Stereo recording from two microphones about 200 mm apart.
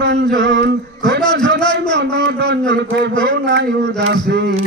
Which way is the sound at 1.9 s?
65° right (ahead or behind).